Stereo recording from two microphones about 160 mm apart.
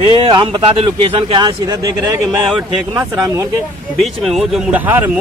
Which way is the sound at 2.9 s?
20° right (ahead or behind).